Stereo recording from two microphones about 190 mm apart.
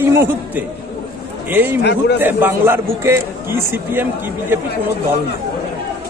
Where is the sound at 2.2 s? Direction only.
10° right (ahead or behind).